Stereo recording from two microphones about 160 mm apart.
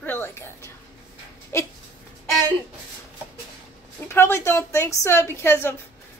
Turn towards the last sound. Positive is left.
turn(degrees=15)  # may be behind; listen again after turning